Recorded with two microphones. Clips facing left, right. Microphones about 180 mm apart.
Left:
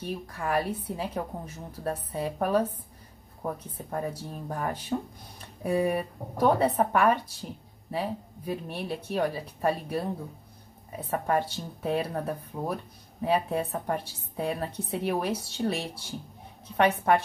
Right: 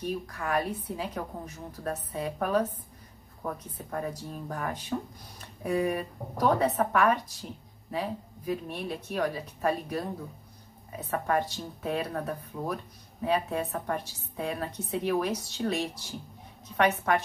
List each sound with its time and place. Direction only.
0.3 s speech: 30° left (ahead or behind)
3.9 s a woman's voice: 30° left (ahead or behind)